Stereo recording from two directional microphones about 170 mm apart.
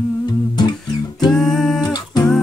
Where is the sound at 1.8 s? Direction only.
25° left (ahead or behind).